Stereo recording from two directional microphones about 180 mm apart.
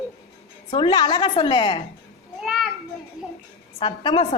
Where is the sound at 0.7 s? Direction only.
25° left (ahead or behind).